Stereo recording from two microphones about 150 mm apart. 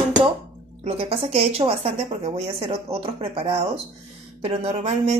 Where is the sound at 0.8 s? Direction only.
40° right (ahead or behind).